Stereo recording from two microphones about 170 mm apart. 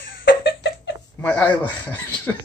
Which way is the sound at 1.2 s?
10° left (ahead or behind).